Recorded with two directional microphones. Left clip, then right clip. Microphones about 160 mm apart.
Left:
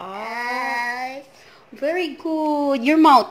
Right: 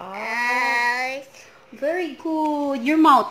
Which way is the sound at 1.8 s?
5° left (ahead or behind).